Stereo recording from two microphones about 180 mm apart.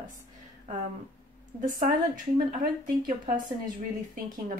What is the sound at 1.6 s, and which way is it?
Speech, 50° right (ahead or behind).